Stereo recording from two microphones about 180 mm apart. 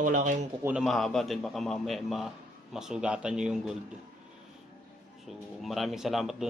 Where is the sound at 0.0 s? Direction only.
45° right (ahead or behind).